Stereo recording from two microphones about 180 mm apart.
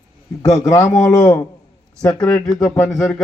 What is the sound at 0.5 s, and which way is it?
Speech, 20° left (ahead or behind).